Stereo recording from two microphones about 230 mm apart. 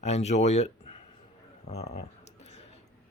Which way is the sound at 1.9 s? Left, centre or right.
Left.